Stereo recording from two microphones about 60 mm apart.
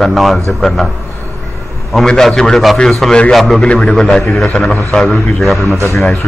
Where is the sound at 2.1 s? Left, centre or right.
Centre.